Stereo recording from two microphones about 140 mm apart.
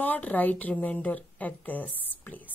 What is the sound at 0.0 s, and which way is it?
A woman's voice, 10° left (ahead or behind).